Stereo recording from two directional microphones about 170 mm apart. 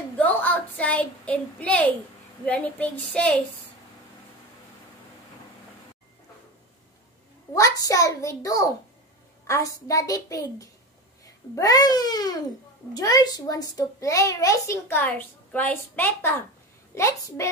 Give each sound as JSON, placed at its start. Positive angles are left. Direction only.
{"t": 0.2, "sound": "a woman's voice", "side_deg": 10}
{"t": 7.5, "sound": "a woman's voice", "side_deg": 20}